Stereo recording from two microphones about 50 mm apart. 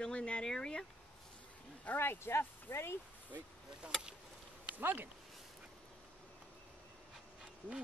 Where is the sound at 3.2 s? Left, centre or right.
Right.